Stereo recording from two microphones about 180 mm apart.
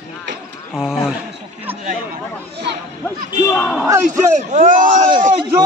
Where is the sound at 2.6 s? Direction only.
70° right (ahead or behind).